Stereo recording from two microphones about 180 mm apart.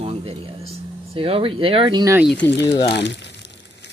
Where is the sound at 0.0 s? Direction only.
30° right (ahead or behind).